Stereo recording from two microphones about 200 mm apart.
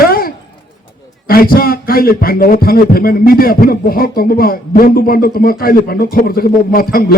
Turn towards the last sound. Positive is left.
turn(degrees=45)  # may be behind; listen again after turning